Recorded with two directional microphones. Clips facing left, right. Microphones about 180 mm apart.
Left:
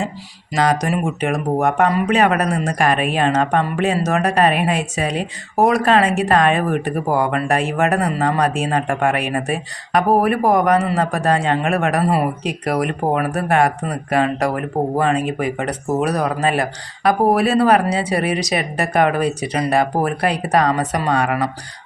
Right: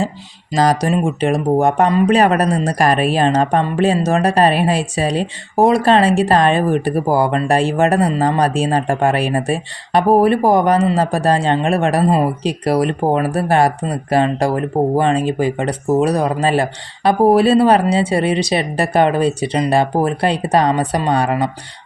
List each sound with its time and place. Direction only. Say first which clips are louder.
0.5 s speech: right 3 dB; 35° right (ahead or behind)